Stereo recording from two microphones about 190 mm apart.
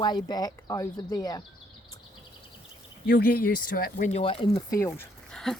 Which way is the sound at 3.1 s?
55° left (ahead or behind).